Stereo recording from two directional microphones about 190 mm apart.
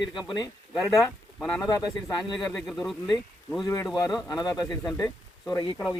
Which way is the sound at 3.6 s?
20° left (ahead or behind).